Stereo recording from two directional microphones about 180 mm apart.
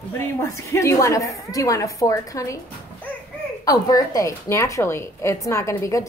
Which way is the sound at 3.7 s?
20° left (ahead or behind).